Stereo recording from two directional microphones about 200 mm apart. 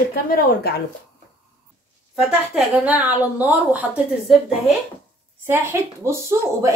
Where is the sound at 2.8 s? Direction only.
10° right (ahead or behind).